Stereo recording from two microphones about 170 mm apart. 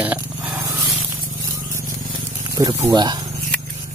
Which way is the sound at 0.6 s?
15° right (ahead or behind).